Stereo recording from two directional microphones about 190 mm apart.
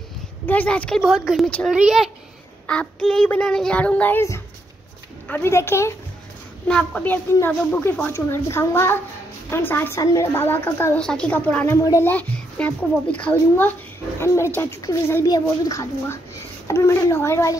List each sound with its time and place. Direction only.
0.5 s a woman's voice: 10° left (ahead or behind)